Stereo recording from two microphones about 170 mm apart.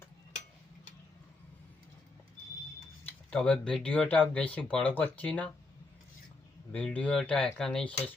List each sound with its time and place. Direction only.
3.1 s speech: 5° left (ahead or behind)
6.7 s speech: 10° left (ahead or behind)